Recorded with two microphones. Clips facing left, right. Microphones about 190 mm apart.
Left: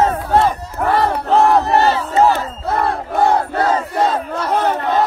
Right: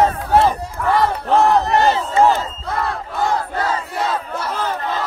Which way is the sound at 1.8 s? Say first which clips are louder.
Left 1 dB; 15° right (ahead or behind).